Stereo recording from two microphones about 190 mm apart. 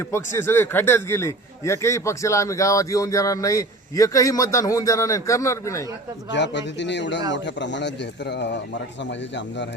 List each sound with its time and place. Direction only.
0.1 s a man's voice: 15° left (ahead or behind)
6.3 s a man's voice: 65° left (ahead or behind)